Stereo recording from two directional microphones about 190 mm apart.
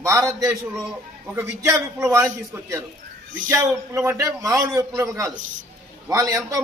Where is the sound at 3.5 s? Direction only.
15° right (ahead or behind).